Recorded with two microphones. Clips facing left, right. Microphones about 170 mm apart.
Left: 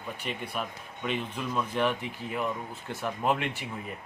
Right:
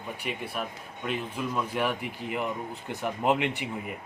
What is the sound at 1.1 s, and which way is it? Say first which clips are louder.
Speech: right 1 dB; 10° right (ahead or behind).